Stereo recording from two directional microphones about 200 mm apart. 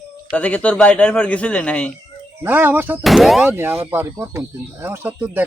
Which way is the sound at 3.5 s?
10° right (ahead or behind).